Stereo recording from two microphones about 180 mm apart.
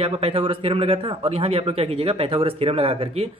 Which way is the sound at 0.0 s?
35° right (ahead or behind).